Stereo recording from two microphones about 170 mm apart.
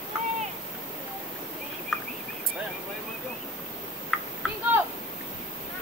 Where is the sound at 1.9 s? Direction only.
5° right (ahead or behind).